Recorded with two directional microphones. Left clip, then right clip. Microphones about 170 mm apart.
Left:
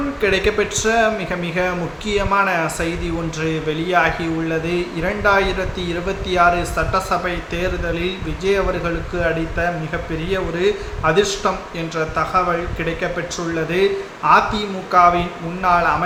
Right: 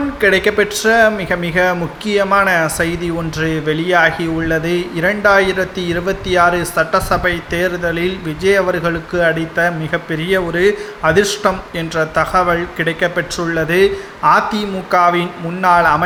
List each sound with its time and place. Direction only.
0.2 s speech: 35° right (ahead or behind)